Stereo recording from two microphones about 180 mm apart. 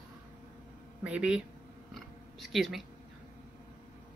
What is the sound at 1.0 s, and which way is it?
Speech, 5° right (ahead or behind).